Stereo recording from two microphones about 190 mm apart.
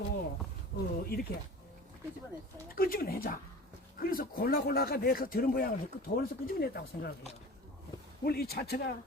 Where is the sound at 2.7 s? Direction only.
50° left (ahead or behind).